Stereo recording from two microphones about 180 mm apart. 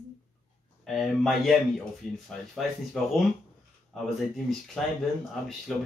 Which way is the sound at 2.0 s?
45° left (ahead or behind).